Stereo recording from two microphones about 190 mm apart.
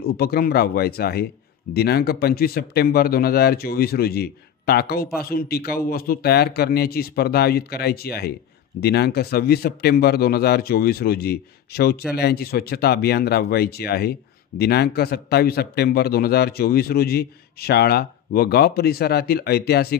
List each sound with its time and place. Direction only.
0.0 s speech: 55° left (ahead or behind)